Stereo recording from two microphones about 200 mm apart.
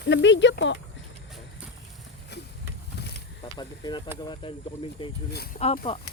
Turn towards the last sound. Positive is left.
turn(degrees=25)  # may be behind; listen again after turning